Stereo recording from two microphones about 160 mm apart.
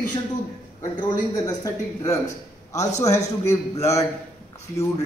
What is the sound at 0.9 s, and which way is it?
A man's voice, 25° left (ahead or behind).